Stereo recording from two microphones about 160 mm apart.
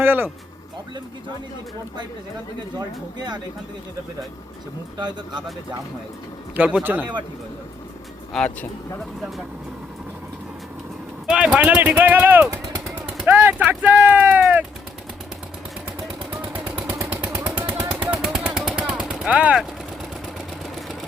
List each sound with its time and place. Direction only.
0.0 s speech: 15° right (ahead or behind)
2.7 s speech: 25° right (ahead or behind)
4.9 s speech: 30° right (ahead or behind)
6.6 s speech: 10° right (ahead or behind)
8.3 s speech: 5° left (ahead or behind)
11.3 s speech: 5° right (ahead or behind)
13.1 s a sound: 10° right (ahead or behind)
16.7 s vehicle: 10° right (ahead or behind)